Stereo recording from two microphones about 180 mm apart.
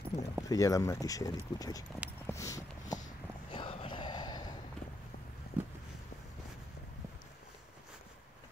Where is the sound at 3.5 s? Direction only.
30° left (ahead or behind).